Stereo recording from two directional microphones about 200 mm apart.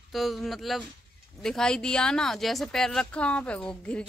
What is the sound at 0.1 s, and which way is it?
Speech, centre (ahead or behind).